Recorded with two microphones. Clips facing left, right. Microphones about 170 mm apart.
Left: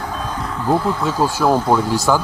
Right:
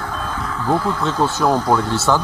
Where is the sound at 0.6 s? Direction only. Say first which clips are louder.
Left 1 dB; 10° left (ahead or behind).